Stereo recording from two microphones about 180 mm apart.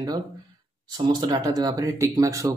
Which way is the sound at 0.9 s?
20° right (ahead or behind).